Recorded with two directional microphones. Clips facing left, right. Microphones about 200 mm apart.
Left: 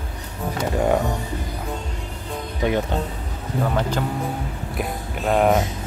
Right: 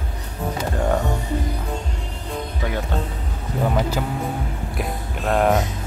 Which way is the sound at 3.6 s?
10° right (ahead or behind).